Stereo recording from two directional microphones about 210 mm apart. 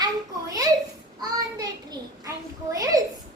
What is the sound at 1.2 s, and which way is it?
Child singing, 20° right (ahead or behind).